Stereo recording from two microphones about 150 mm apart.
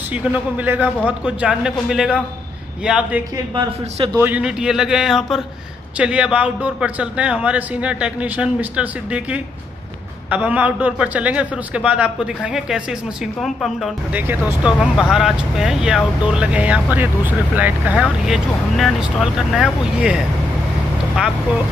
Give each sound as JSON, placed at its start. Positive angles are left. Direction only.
{"t": 0.1, "sound": "a man's voice", "side_deg": -10}
{"t": 14.1, "sound": "speech", "side_deg": -10}